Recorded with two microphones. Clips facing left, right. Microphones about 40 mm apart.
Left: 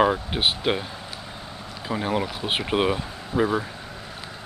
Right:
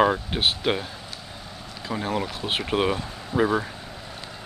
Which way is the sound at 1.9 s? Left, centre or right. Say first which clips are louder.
Left 2 dB; centre.